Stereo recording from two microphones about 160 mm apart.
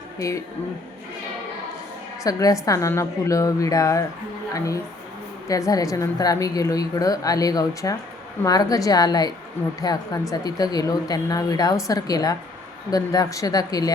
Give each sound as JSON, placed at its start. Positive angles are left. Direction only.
{"t": 0.2, "sound": "speech", "side_deg": 20}
{"t": 2.2, "sound": "speech", "side_deg": 20}